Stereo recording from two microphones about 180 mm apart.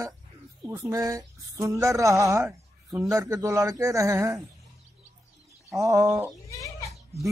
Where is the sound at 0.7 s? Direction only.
15° right (ahead or behind).